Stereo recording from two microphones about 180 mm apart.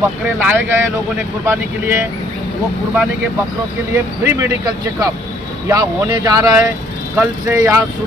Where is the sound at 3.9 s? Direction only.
15° right (ahead or behind).